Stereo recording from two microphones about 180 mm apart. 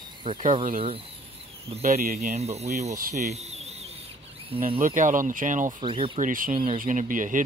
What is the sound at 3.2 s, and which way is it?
Bird, 40° right (ahead or behind).